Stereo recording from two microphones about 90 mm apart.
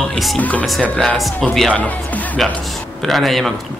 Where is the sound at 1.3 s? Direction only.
5° left (ahead or behind).